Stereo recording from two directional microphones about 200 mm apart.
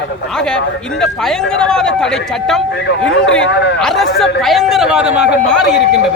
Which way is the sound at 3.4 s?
60° left (ahead or behind).